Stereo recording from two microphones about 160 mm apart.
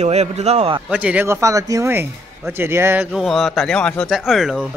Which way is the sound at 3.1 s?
Centre (ahead or behind).